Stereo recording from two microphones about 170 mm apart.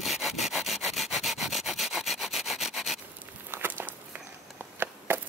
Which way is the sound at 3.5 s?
10° right (ahead or behind).